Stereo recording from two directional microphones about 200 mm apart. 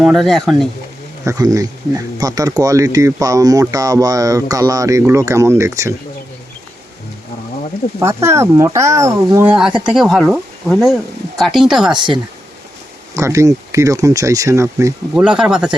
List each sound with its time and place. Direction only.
0.0 s speech: centre (ahead or behind)
1.2 s speech: 15° right (ahead or behind)
7.9 s speech: 15° right (ahead or behind)
11.9 s speech: 25° right (ahead or behind)
15.1 s speech: 5° right (ahead or behind)